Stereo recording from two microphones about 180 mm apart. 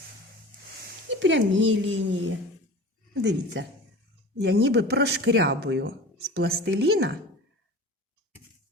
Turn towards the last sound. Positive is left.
turn(degrees=-70)  # may be behind; listen again after turning